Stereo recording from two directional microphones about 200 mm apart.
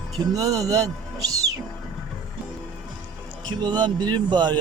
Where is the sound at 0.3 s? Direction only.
15° right (ahead or behind).